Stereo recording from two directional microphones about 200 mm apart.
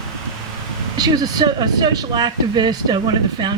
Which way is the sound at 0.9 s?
20° right (ahead or behind).